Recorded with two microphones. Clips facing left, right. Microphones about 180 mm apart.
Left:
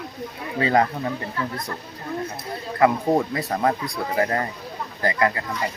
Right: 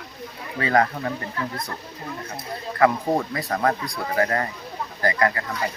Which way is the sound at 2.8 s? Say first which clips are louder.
Left 1 dB; 15° left (ahead or behind).